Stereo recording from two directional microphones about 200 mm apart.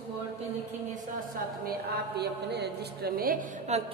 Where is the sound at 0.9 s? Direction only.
45° right (ahead or behind).